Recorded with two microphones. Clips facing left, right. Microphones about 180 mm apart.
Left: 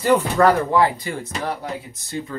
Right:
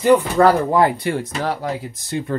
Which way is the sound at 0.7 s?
45° right (ahead or behind).